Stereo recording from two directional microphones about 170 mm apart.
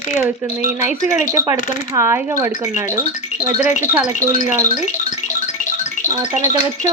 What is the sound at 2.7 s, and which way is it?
Speech, 50° left (ahead or behind).